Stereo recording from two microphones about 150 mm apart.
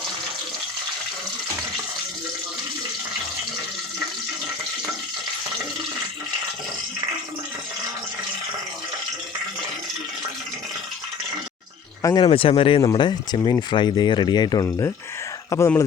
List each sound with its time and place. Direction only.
12.0 s speech: 35° left (ahead or behind); by 15.8 s 20° left (ahead or behind)